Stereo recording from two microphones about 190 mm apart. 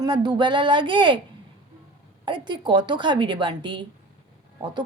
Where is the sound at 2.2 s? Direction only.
25° right (ahead or behind).